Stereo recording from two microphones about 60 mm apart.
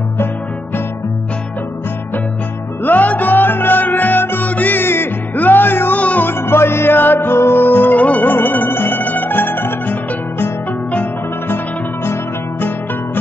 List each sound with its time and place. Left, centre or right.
2.8 s music: left
6.4 s music: left
11.4 s music: left